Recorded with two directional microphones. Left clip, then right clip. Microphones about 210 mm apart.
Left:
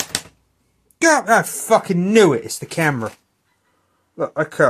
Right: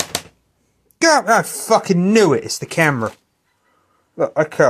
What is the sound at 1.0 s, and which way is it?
Speech, 15° right (ahead or behind).